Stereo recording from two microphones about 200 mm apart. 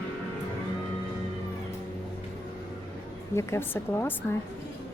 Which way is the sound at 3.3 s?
15° left (ahead or behind).